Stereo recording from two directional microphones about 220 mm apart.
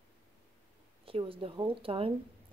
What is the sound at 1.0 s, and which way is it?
Speech, 25° right (ahead or behind).